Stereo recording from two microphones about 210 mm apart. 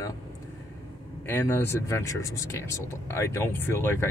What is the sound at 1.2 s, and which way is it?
Speech, 10° left (ahead or behind).